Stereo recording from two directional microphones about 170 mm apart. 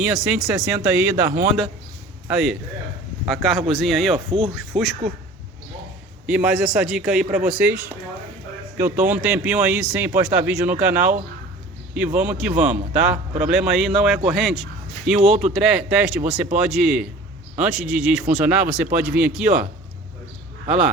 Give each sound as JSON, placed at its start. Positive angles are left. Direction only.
{"t": 0.0, "sound": "a man's voice", "side_deg": -5}
{"t": 2.2, "sound": "a man's voice", "side_deg": -5}
{"t": 4.3, "sound": "speech", "side_deg": -30}
{"t": 4.7, "sound": "a man's voice", "side_deg": 0}
{"t": 6.2, "sound": "a man's voice", "side_deg": -5}
{"t": 8.8, "sound": "a man's voice", "side_deg": -10}